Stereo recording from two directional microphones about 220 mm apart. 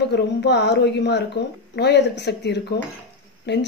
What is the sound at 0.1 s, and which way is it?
A woman's voice, 50° left (ahead or behind).